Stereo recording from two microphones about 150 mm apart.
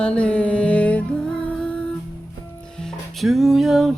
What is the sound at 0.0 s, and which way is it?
Mantra, 5° left (ahead or behind).